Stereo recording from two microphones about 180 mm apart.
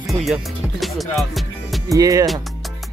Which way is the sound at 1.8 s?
20° right (ahead or behind).